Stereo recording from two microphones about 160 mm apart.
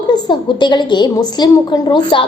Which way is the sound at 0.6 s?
30° left (ahead or behind).